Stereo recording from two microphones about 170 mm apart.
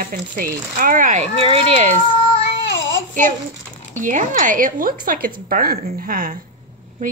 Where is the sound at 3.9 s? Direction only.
50° right (ahead or behind).